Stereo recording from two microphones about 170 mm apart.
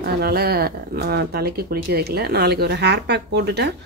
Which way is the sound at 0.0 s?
65° right (ahead or behind).